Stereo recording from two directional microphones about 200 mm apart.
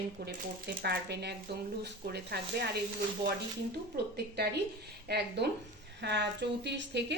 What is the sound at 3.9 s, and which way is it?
A woman's voice, 55° right (ahead or behind).